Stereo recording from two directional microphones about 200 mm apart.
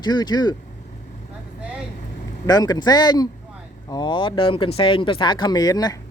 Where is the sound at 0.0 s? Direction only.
20° left (ahead or behind).